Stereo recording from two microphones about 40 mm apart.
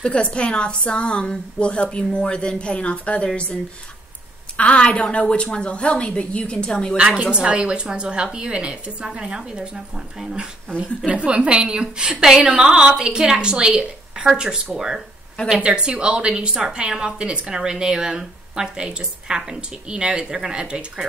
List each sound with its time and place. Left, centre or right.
0.0 s a woman's voice: left
4.6 s a woman's voice: left
7.0 s speech: right
11.1 s speech: right
15.6 s speech: right